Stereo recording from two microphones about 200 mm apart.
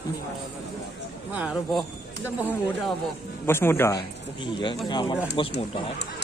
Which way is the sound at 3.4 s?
10° left (ahead or behind).